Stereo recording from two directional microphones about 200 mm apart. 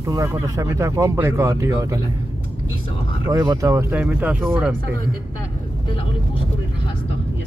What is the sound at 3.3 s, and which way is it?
Speech, 15° right (ahead or behind).